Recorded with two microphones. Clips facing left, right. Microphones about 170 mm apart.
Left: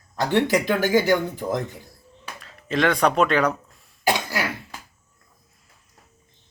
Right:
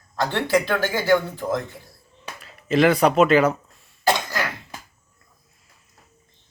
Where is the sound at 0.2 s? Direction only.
15° left (ahead or behind).